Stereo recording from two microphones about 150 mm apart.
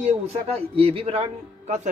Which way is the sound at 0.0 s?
45° right (ahead or behind).